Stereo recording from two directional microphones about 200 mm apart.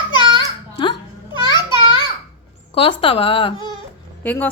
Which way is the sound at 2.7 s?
25° left (ahead or behind).